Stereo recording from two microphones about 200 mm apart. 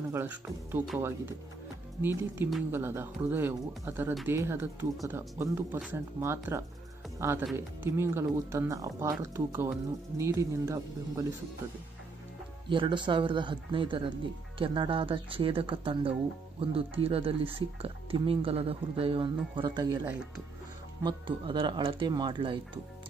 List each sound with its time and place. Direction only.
0.1 s speech: 10° right (ahead or behind)
12.6 s speech: 25° right (ahead or behind)